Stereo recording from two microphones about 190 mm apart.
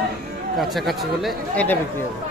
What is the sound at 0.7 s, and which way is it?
Speech, centre (ahead or behind).